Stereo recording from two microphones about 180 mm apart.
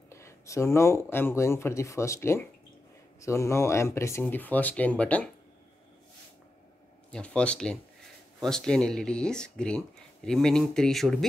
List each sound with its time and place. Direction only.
0.1 s speech: 15° left (ahead or behind)
7.1 s speech: 5° left (ahead or behind)